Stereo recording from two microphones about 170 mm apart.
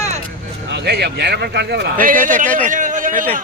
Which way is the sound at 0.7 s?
75° right (ahead or behind).